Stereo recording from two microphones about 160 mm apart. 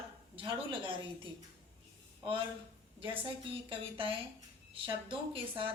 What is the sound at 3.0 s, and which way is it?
A woman's voice, 30° right (ahead or behind).